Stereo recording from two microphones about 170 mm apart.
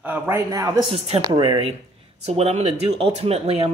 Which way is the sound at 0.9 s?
35° right (ahead or behind).